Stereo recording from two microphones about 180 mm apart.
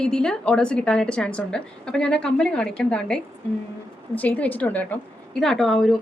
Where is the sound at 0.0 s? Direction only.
5° left (ahead or behind).